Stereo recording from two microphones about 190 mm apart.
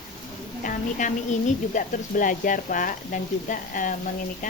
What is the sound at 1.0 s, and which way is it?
Speech, 40° left (ahead or behind).